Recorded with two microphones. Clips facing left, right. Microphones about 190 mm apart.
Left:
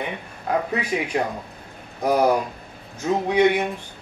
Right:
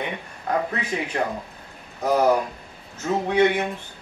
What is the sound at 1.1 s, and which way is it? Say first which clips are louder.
Speech: left 1 dB; 10° left (ahead or behind).